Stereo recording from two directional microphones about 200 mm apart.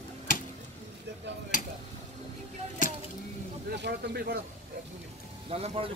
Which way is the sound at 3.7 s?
60° right (ahead or behind).